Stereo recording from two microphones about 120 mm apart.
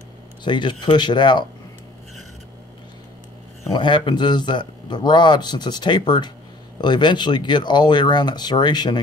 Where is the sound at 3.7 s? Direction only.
40° left (ahead or behind).